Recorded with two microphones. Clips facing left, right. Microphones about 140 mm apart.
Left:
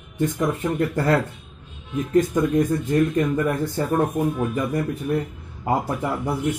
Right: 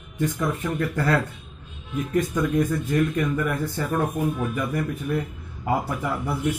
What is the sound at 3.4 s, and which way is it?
Speech, 20° left (ahead or behind).